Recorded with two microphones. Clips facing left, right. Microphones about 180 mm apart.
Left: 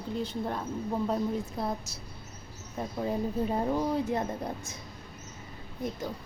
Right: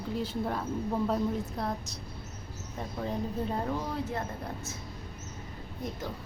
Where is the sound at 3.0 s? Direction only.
10° left (ahead or behind).